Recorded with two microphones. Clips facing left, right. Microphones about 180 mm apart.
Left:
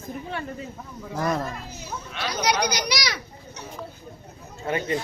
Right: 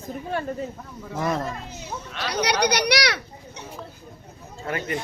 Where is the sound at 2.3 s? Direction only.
65° right (ahead or behind).